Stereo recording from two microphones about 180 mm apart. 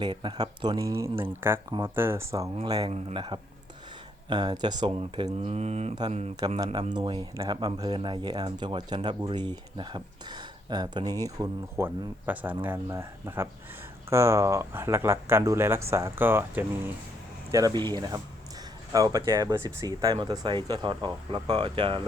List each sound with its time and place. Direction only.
0.0 s speech: 25° right (ahead or behind)
6.9 s speech: 25° right (ahead or behind)